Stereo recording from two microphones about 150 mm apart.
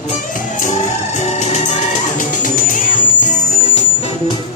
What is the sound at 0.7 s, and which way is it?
Music, 50° left (ahead or behind).